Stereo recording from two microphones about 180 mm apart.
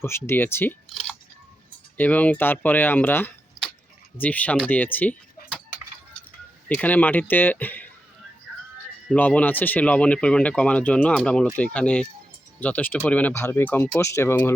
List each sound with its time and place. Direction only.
0.0 s speech: 15° left (ahead or behind)
2.0 s speech: 10° left (ahead or behind)
5.4 s a sound: 55° left (ahead or behind)
6.7 s speech: 10° left (ahead or behind)
9.0 s speech: 10° left (ahead or behind)